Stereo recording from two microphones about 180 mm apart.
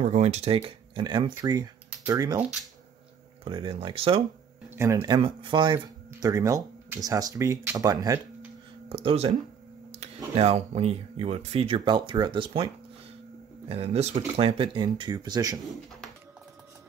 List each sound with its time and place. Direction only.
0.0 s speech: 40° right (ahead or behind); by 2.4 s 20° right (ahead or behind)
3.4 s speech: 30° right (ahead or behind)
4.7 s speech: 15° right (ahead or behind)
8.8 s speech: 30° right (ahead or behind)
13.7 s speech: 35° right (ahead or behind)